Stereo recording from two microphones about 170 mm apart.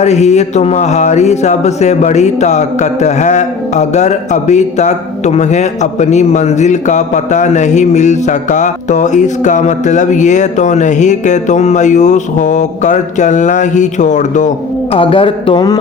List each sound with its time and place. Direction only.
0.0 s speech: 40° left (ahead or behind)
14.9 s speech: 30° left (ahead or behind)